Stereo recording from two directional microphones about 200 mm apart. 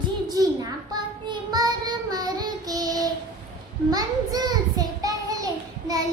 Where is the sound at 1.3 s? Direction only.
20° right (ahead or behind).